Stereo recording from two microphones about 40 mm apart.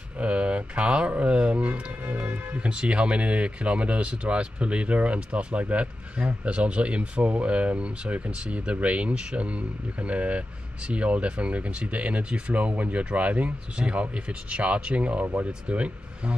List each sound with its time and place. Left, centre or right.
0.2 s mantra: right
1.2 s a sound: right
2.0 s music: right
2.7 s speech: right
13.7 s speech: right